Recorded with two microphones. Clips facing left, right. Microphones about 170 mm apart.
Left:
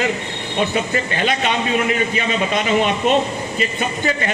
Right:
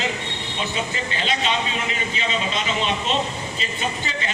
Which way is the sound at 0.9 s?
55° left (ahead or behind).